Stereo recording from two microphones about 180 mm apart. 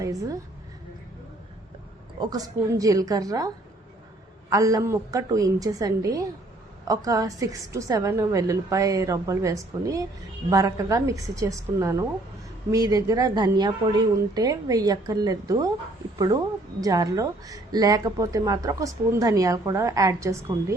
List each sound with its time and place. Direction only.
0.0 s speech: 20° right (ahead or behind)
2.1 s speech: 25° right (ahead or behind)